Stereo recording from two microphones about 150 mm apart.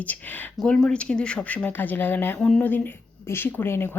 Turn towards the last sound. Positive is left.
turn(degrees=15)  # may be behind; listen again after turning